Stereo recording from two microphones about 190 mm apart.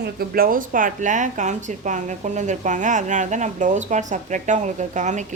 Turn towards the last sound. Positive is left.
turn(degrees=-40)  # may be behind; listen again after turning